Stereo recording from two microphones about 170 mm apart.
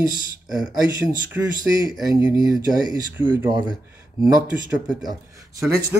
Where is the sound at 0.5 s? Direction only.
20° right (ahead or behind).